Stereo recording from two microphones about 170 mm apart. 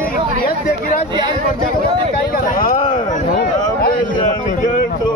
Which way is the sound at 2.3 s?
55° left (ahead or behind).